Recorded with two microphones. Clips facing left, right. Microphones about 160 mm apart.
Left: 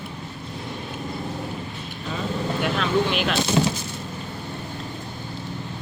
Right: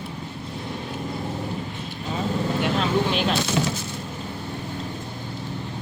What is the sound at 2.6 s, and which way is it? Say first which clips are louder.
Vehicle: left 1 dB; 30° right (ahead or behind).